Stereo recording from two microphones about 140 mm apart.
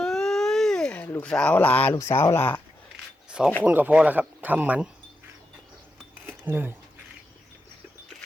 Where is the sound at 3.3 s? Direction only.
5° right (ahead or behind).